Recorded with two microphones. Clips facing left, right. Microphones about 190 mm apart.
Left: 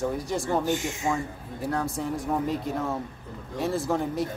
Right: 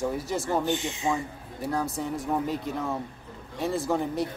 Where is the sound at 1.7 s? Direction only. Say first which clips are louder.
Even; centre (ahead or behind).